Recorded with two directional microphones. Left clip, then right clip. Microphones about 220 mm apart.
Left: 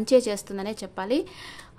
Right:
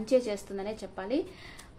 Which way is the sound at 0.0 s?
40° left (ahead or behind).